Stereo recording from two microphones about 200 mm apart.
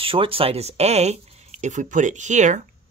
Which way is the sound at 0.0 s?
25° right (ahead or behind).